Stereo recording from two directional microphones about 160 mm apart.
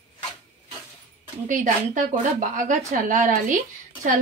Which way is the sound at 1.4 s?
50° right (ahead or behind).